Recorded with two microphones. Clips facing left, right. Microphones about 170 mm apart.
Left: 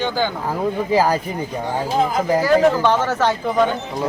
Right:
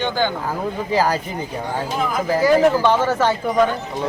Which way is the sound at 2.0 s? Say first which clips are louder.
Left 2 dB; 25° left (ahead or behind).